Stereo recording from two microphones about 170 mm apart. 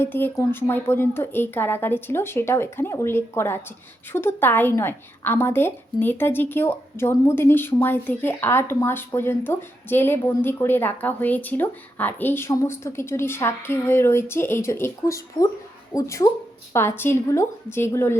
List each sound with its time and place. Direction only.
0.0 s a woman's voice: 15° left (ahead or behind)